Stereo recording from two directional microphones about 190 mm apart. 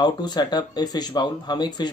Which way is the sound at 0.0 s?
20° left (ahead or behind).